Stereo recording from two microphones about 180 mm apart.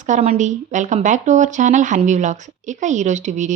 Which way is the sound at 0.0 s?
40° right (ahead or behind).